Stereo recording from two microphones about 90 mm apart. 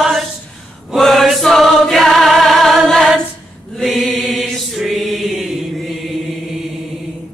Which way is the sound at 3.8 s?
Centre (ahead or behind).